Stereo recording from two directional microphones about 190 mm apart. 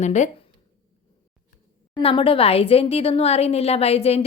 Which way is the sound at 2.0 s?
30° left (ahead or behind).